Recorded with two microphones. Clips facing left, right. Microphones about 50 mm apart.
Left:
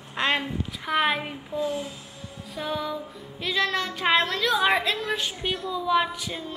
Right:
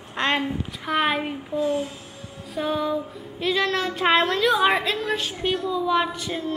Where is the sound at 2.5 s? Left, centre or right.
Centre.